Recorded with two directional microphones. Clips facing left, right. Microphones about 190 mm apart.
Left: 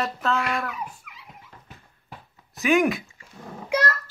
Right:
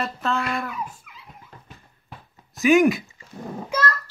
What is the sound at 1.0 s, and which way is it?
Dog, 70° left (ahead or behind).